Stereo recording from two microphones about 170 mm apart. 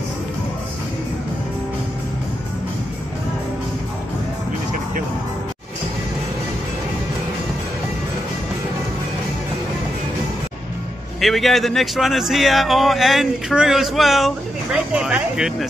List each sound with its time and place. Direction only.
11.1 s speech: centre (ahead or behind)